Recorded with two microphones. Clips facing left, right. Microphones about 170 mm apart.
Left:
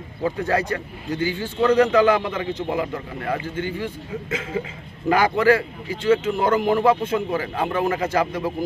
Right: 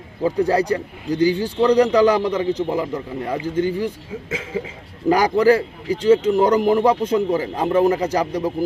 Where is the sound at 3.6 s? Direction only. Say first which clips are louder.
Right 7 dB; 40° right (ahead or behind).